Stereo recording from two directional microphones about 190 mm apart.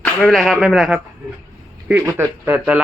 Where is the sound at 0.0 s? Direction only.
5° left (ahead or behind).